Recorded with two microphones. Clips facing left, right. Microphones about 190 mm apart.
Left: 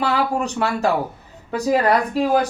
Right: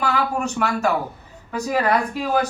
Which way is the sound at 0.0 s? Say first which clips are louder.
Left 2 dB; 35° left (ahead or behind).